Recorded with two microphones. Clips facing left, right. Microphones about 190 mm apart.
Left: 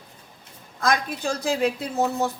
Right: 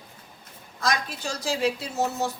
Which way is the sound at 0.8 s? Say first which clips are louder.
Left 4 dB; 55° left (ahead or behind).